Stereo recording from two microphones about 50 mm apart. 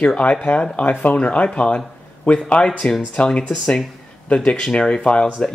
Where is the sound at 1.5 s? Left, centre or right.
Left.